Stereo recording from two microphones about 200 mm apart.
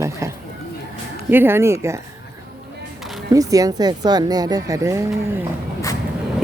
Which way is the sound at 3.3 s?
15° right (ahead or behind).